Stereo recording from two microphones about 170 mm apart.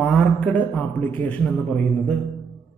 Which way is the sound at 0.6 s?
10° left (ahead or behind).